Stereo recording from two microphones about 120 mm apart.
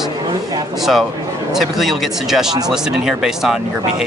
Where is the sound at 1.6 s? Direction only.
Centre (ahead or behind).